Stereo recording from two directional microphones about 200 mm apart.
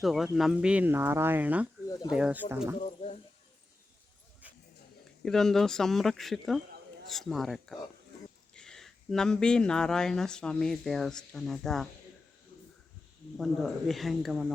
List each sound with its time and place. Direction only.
0.0 s speech: centre (ahead or behind)
2.8 s a sound: 30° left (ahead or behind)
5.2 s speech: 5° left (ahead or behind)
13.3 s speech: centre (ahead or behind)